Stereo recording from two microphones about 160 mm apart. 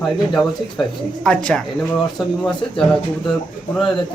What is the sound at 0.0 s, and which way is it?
Speech, centre (ahead or behind).